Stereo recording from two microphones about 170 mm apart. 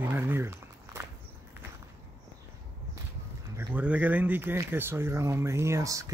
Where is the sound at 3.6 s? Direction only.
10° right (ahead or behind).